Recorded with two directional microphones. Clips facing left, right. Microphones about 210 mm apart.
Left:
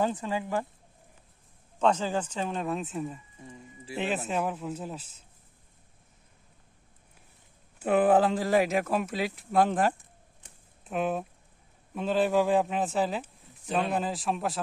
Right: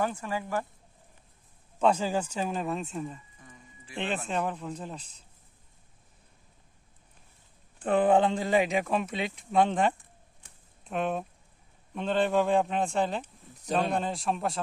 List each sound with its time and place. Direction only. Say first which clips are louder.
0.0 s speech: left 2 dB; 20° left (ahead or behind)
1.8 s speech: right 1 dB; 10° right (ahead or behind); by 5.2 s 5° left (ahead or behind)
7.8 s speech: left 1 dB; 5° left (ahead or behind)